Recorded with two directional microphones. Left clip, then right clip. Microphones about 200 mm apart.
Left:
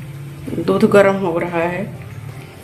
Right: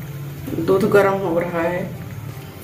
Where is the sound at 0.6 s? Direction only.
45° left (ahead or behind).